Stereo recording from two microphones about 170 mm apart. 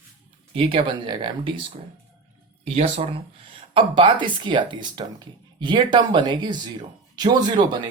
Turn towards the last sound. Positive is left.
turn(degrees=-25)  # may be behind; listen again after turning